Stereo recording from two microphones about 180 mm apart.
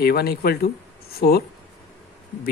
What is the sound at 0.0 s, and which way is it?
Speech, 60° left (ahead or behind).